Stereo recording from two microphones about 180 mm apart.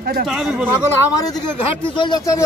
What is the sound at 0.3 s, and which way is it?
Speech, centre (ahead or behind).